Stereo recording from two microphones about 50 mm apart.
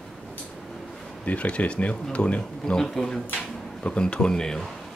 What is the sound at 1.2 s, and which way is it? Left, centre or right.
Speech, left.